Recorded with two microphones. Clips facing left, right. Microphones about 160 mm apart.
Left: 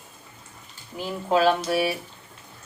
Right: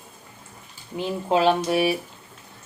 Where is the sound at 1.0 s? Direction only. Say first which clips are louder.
Right 1 dB; 20° right (ahead or behind).